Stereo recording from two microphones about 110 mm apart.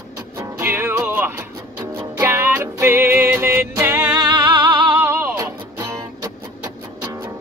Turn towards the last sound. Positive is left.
turn(degrees=-20)  # may be behind; listen again after turning